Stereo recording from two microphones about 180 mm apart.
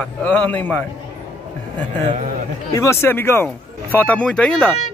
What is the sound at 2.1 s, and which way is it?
Speech, 35° right (ahead or behind).